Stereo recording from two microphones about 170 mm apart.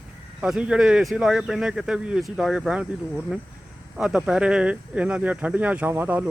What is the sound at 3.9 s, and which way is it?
Speech, 5° right (ahead or behind).